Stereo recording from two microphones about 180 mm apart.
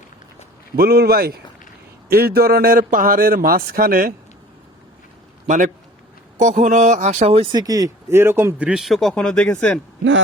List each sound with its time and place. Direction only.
0.8 s a man's voice: 60° right (ahead or behind)
5.5 s a man's voice: 45° right (ahead or behind); by 9.8 s 5° left (ahead or behind)